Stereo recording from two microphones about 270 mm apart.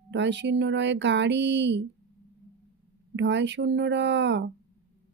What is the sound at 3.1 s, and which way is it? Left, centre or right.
Speech, right.